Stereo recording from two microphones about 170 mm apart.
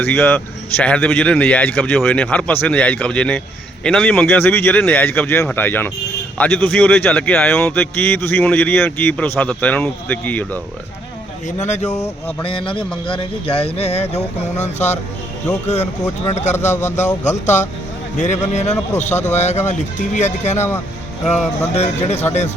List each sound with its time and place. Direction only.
0.0 s speech: 10° left (ahead or behind)
11.4 s speech: 45° left (ahead or behind)
12.5 s speech: 30° left (ahead or behind)
16.7 s speech: 15° left (ahead or behind)
17.2 s speech: 45° left (ahead or behind)
20.6 s speech: 15° left (ahead or behind)
21.8 s speech: 40° left (ahead or behind)